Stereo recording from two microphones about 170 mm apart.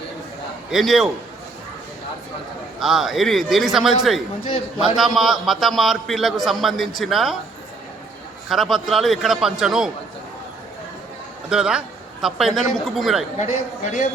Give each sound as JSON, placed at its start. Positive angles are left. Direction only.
{"t": 0.7, "sound": "a man's voice", "side_deg": 0}
{"t": 2.7, "sound": "a man's voice", "side_deg": 0}
{"t": 8.4, "sound": "a man's voice", "side_deg": 0}
{"t": 11.4, "sound": "a man's voice", "side_deg": -5}
{"t": 13.3, "sound": "a man's voice", "side_deg": 45}